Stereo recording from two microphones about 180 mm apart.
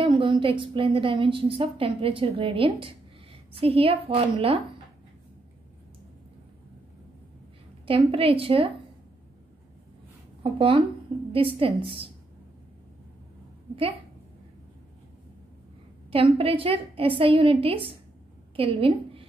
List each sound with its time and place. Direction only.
0.0 s a woman's voice: 30° right (ahead or behind)
7.8 s a woman's voice: 30° right (ahead or behind)
10.4 s a woman's voice: 30° right (ahead or behind)
16.1 s a woman's voice: 30° right (ahead or behind)